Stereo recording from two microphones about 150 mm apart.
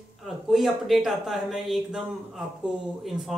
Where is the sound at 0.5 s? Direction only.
Centre (ahead or behind).